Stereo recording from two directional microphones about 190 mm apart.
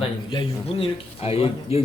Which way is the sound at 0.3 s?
30° left (ahead or behind).